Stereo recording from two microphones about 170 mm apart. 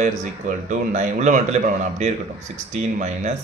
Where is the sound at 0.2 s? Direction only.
45° right (ahead or behind).